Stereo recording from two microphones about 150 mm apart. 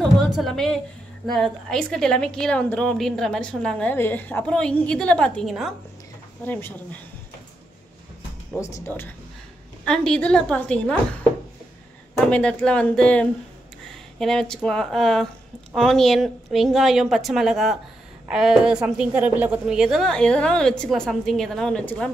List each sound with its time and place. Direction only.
0.0 s a sound: centre (ahead or behind)
1.2 s a woman's voice: 5° left (ahead or behind)
6.4 s speech: 10° left (ahead or behind)
8.5 s a woman's voice: 20° left (ahead or behind)
12.3 s a woman's voice: 10° left (ahead or behind)